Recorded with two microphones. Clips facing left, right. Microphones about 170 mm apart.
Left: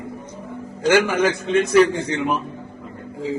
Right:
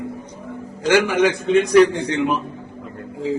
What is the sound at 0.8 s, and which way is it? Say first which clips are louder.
Speech: right 1 dB; centre (ahead or behind).